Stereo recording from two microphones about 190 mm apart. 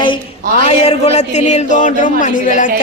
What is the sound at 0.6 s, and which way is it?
A man's voice, 35° left (ahead or behind).